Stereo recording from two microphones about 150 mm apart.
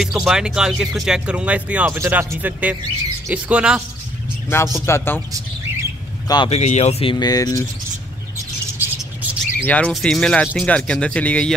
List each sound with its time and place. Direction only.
0.0 s speech: 5° right (ahead or behind)
4.5 s speech: 15° left (ahead or behind)
6.2 s speech: 30° left (ahead or behind)
6.5 s speech: 45° left (ahead or behind)
7.2 s speech: 25° left (ahead or behind)
8.7 s a sound: 10° right (ahead or behind)
9.7 s speech: 10° left (ahead or behind)